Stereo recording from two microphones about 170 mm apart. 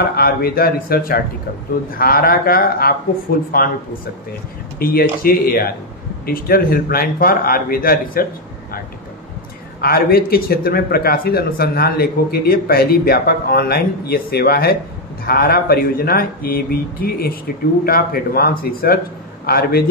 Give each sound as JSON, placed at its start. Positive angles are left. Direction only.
{"t": 0.1, "sound": "speech", "side_deg": 60}
{"t": 4.7, "sound": "speech", "side_deg": 60}
{"t": 9.8, "sound": "speech", "side_deg": 65}